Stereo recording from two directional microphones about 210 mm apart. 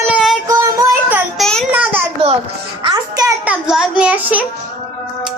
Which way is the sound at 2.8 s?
20° right (ahead or behind).